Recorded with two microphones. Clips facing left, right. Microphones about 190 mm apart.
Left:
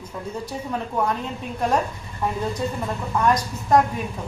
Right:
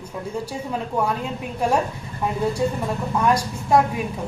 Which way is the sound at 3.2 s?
10° right (ahead or behind).